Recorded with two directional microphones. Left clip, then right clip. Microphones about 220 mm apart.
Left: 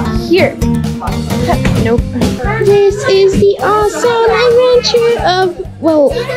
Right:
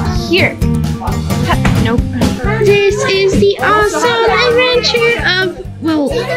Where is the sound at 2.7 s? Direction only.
20° left (ahead or behind).